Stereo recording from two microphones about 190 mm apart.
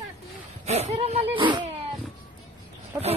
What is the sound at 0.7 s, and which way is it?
Speech, 35° right (ahead or behind).